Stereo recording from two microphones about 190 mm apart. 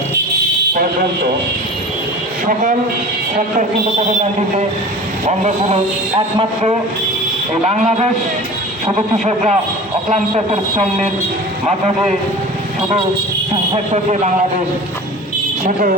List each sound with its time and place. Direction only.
5.2 s a man's voice: 35° right (ahead or behind)
15.6 s speech: 45° right (ahead or behind)